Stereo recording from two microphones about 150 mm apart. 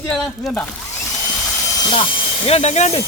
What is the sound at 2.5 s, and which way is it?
Speech, 45° left (ahead or behind).